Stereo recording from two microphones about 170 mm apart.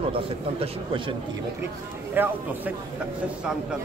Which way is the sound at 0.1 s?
30° right (ahead or behind).